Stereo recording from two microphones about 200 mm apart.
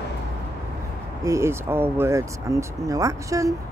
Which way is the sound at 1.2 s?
15° right (ahead or behind).